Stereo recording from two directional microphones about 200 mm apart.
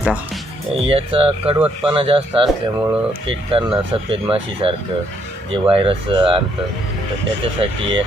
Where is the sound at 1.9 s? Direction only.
25° right (ahead or behind).